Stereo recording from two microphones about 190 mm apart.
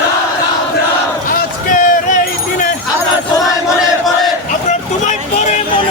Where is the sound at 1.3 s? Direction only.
45° left (ahead or behind).